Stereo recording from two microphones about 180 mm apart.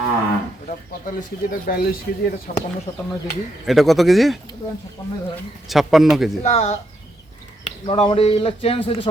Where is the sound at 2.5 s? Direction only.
45° left (ahead or behind).